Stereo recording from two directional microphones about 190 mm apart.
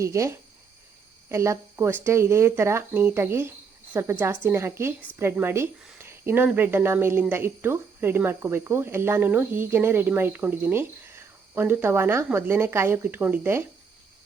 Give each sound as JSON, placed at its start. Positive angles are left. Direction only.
{"t": 0.0, "sound": "speech", "side_deg": -15}